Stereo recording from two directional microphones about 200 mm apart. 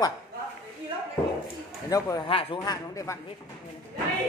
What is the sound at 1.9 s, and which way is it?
A man's voice, 20° left (ahead or behind).